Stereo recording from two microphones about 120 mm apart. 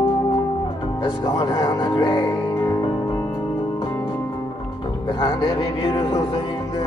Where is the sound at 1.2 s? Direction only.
35° left (ahead or behind).